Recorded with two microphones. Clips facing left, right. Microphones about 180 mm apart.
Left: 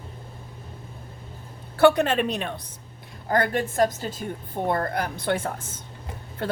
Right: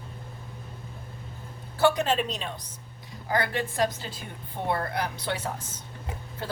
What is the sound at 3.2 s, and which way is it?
A woman's voice, 45° left (ahead or behind).